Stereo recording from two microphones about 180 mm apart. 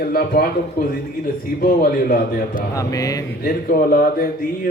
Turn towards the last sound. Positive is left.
turn(degrees=55)  # may be behind; listen again after turning